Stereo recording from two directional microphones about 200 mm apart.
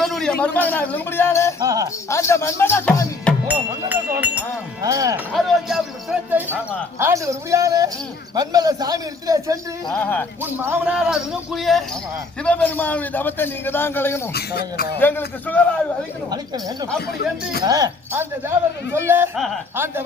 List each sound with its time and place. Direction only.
0.0 s a man's voice: centre (ahead or behind)
1.5 s speech: 15° right (ahead or behind)
2.0 s a man's voice: 15° left (ahead or behind)
3.4 s music: 10° right (ahead or behind)
4.8 s speech: 15° right (ahead or behind)
5.3 s a man's voice: centre (ahead or behind); by 9.6 s 15° right (ahead or behind)
9.9 s a man's voice: 10° left (ahead or behind)
10.4 s a man's voice: 10° right (ahead or behind); by 14.2 s 10° left (ahead or behind)
14.3 s speech: 55° left (ahead or behind)
14.9 s a man's voice: 10° left (ahead or behind)
16.3 s a man's voice: 20° right (ahead or behind)